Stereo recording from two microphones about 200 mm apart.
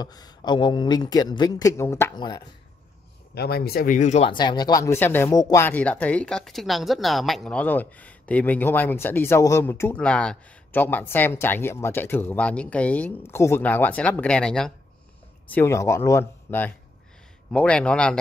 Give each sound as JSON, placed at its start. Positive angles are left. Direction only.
{"t": 0.0, "sound": "speech", "side_deg": 20}
{"t": 3.3, "sound": "speech", "side_deg": 50}
{"t": 4.3, "sound": "speech", "side_deg": 20}